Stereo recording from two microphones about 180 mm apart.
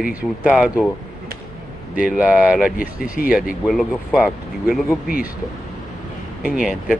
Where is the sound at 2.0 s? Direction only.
5° right (ahead or behind).